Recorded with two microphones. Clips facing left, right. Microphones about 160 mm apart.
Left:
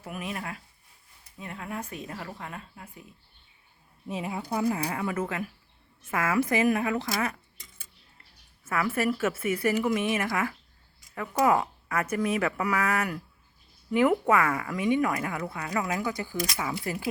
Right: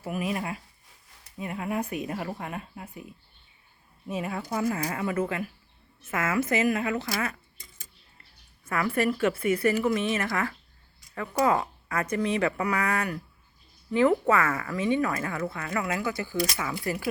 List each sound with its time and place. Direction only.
0.0 s speech: 5° right (ahead or behind)
4.1 s a woman's voice: 20° left (ahead or behind); by 5.2 s centre (ahead or behind)
6.2 s a woman's voice: 15° left (ahead or behind)
8.6 s a woman's voice: 5° left (ahead or behind)